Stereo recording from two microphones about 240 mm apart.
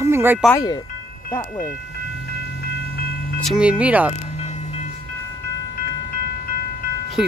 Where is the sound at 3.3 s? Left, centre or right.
Centre.